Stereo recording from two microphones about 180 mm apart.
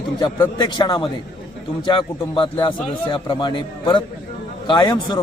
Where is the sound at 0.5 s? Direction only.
25° left (ahead or behind).